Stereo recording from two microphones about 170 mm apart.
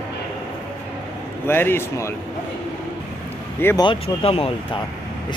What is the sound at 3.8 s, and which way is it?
Speech, 35° left (ahead or behind).